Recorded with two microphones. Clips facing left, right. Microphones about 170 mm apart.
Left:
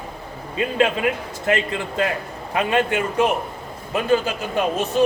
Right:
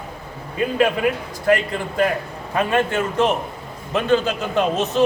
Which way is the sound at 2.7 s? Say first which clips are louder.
Even; 15° left (ahead or behind).